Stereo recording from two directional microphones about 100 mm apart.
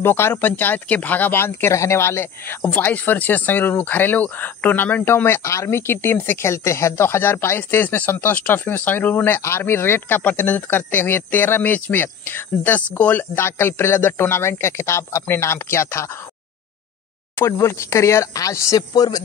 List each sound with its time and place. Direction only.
0.0 s speech: 25° left (ahead or behind)
17.4 s speech: 30° left (ahead or behind)